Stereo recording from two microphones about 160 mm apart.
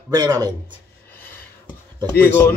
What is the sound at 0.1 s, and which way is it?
Speech, 25° right (ahead or behind).